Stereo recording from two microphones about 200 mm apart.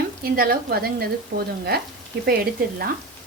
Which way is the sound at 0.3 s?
50° right (ahead or behind).